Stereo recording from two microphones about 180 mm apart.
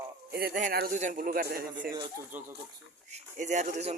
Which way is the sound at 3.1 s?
40° right (ahead or behind).